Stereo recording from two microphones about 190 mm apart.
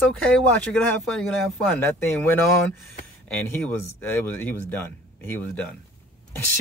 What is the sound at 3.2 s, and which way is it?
Speech, 10° left (ahead or behind).